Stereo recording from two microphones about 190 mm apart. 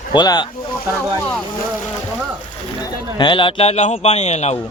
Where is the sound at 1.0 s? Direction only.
5° left (ahead or behind).